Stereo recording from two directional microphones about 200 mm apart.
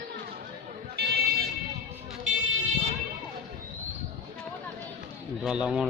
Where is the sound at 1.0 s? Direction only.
55° right (ahead or behind).